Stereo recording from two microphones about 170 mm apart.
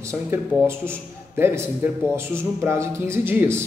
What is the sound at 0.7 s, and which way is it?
A man's voice, 15° right (ahead or behind).